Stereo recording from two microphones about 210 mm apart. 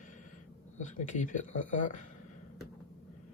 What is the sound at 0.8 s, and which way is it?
Speech, 35° left (ahead or behind).